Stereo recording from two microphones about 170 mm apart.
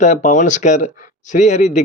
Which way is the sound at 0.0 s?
45° left (ahead or behind).